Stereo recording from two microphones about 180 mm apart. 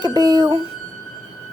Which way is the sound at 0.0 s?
20° right (ahead or behind).